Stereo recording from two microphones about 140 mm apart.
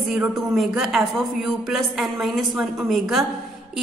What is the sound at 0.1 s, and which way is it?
A woman's voice, centre (ahead or behind).